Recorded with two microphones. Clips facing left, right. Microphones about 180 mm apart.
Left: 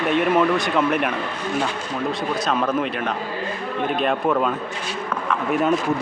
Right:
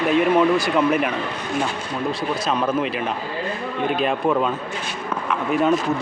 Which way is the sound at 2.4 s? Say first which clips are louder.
Right 1 dB; centre (ahead or behind).